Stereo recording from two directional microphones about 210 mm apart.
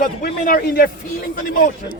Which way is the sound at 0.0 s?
45° left (ahead or behind).